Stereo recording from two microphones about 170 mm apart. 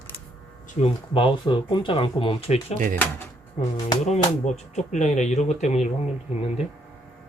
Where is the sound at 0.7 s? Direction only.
35° left (ahead or behind).